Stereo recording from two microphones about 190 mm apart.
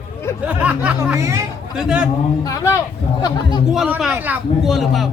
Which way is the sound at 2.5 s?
15° left (ahead or behind).